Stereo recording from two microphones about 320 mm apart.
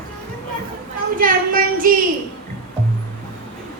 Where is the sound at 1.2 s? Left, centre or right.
Right.